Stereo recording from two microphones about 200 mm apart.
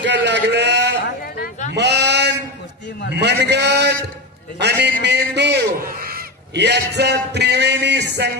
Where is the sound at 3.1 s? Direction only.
60° right (ahead or behind).